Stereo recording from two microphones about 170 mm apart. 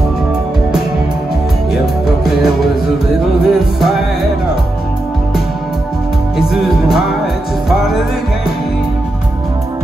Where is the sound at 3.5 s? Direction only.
5° right (ahead or behind).